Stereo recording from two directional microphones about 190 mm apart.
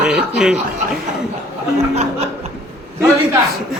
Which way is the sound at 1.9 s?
35° right (ahead or behind).